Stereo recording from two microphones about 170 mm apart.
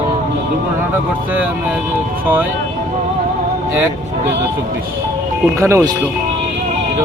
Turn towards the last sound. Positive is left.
turn(degrees=-20)  # may be behind; listen again after turning